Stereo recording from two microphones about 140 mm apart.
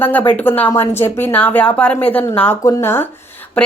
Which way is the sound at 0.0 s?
15° left (ahead or behind).